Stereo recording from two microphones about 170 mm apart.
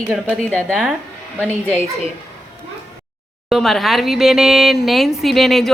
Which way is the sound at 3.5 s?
Centre (ahead or behind).